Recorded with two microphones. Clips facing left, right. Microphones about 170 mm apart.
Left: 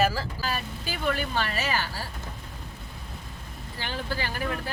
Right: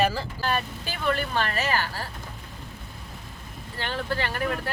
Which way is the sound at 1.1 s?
50° right (ahead or behind).